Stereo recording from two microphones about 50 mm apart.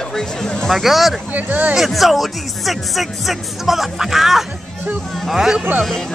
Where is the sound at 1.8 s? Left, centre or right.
Centre.